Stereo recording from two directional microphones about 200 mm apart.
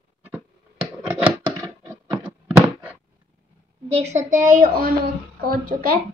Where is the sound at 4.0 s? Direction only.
35° right (ahead or behind).